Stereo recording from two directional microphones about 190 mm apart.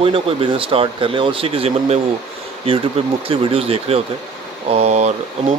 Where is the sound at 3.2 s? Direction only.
30° right (ahead or behind).